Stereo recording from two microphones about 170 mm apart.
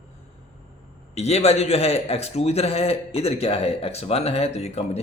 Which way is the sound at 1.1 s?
40° left (ahead or behind).